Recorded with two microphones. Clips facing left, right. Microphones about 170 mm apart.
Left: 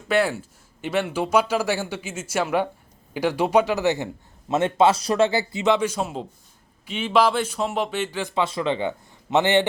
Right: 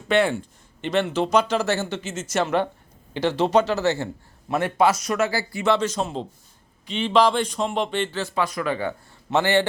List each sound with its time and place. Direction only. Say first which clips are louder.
0.1 s a man's voice: right 1 dB; 5° left (ahead or behind)
8.4 s speech: left 1 dB; 25° left (ahead or behind)